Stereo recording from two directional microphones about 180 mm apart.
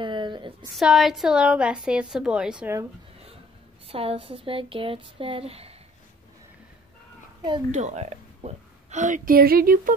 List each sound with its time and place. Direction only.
0.0 s a sound: 25° right (ahead or behind)
0.7 s a woman's voice: centre (ahead or behind)
3.8 s speech: 30° right (ahead or behind)
7.7 s a woman's voice: 40° right (ahead or behind)